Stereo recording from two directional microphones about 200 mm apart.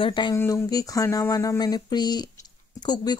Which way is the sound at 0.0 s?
25° left (ahead or behind).